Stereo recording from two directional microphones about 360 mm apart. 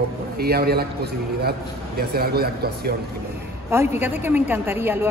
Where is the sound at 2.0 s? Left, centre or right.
Right.